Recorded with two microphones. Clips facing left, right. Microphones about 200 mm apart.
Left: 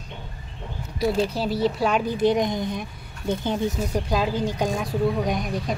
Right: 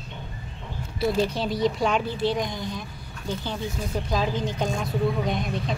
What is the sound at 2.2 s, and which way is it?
Speech, 20° left (ahead or behind).